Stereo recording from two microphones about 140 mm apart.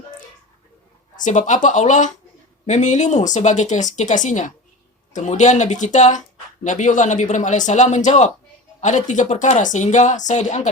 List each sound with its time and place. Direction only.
1.2 s speech: 60° left (ahead or behind)